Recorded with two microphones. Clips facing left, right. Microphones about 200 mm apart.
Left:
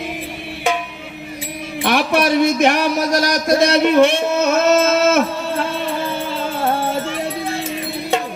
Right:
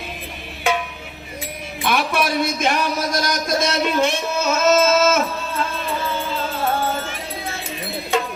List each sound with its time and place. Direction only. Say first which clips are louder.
1.8 s speech: left 4 dB; 65° left (ahead or behind)